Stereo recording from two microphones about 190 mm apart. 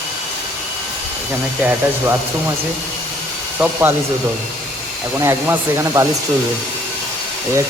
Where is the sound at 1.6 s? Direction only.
10° right (ahead or behind).